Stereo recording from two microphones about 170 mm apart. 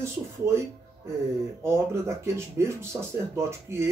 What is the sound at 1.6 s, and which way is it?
Speech, 15° right (ahead or behind).